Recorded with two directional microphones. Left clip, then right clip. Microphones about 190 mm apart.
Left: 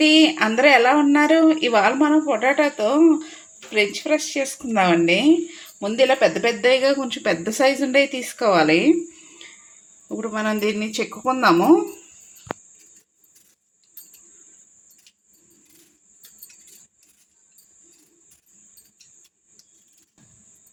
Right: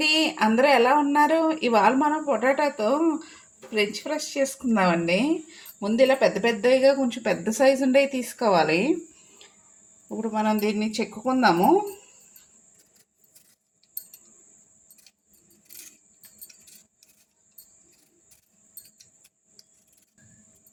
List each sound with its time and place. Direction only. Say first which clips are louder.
0.0 s speech: left 6 dB; 30° left (ahead or behind)
10.2 s speech: left 1 dB; 40° left (ahead or behind)